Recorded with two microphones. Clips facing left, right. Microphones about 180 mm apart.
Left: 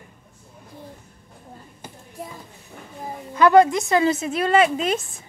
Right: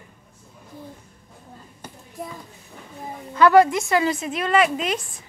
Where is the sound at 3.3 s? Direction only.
20° left (ahead or behind).